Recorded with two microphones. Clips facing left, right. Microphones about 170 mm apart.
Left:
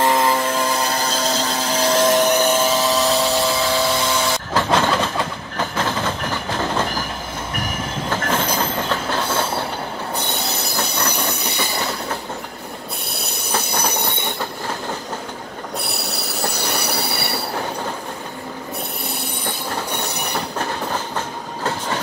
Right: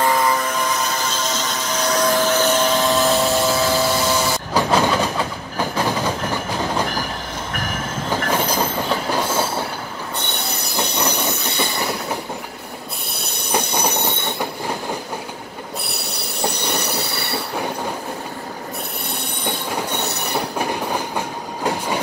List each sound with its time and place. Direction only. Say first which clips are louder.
0.0 s a sound: left 1 dB; 25° left (ahead or behind); by 3.8 s centre (ahead or behind)
4.6 s vehicle: right 1 dB; 10° right (ahead or behind)
5.6 s train: right 2 dB; 10° right (ahead or behind)
9.1 s train: right 1 dB; 10° right (ahead or behind)
13.5 s train: right 2 dB; 10° right (ahead or behind)
16.6 s train: even; 10° left (ahead or behind)